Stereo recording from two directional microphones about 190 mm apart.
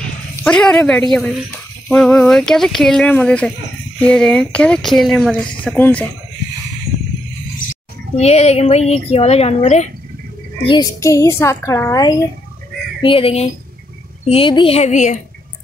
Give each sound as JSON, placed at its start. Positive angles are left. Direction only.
{"t": 0.4, "sound": "speech", "side_deg": 5}
{"t": 8.2, "sound": "speech", "side_deg": 35}
{"t": 10.7, "sound": "a child's voice", "side_deg": 20}
{"t": 13.0, "sound": "fowl", "side_deg": 30}
{"t": 14.2, "sound": "speech", "side_deg": 30}